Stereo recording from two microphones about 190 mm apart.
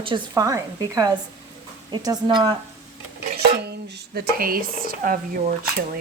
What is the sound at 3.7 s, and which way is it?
Speech, 50° right (ahead or behind).